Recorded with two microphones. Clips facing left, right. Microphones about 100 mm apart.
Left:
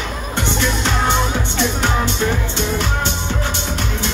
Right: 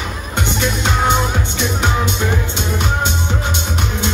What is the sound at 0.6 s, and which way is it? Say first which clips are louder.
Music: right 2 dB; 15° right (ahead or behind).